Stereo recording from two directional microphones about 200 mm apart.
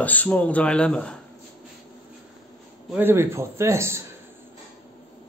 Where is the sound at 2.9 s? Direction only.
10° right (ahead or behind).